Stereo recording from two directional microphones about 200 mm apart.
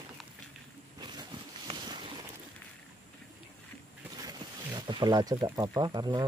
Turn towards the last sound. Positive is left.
turn(degrees=-20)  # may be behind; listen again after turning